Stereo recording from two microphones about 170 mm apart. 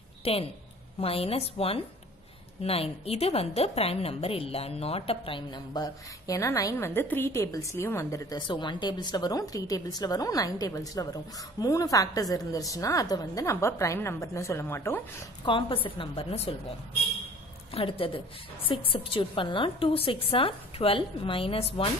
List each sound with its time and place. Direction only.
0.2 s a woman's voice: 35° left (ahead or behind); by 15.0 s 15° left (ahead or behind)
15.4 s a woman's voice: 30° left (ahead or behind)
17.7 s a woman's voice: 30° left (ahead or behind)